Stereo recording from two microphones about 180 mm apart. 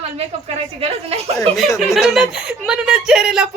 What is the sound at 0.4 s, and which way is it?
Speech, 35° right (ahead or behind).